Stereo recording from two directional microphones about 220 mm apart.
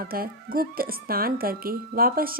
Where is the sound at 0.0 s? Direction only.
40° right (ahead or behind).